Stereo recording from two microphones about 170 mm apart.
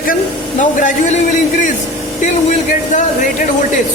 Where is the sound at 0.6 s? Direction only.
50° left (ahead or behind).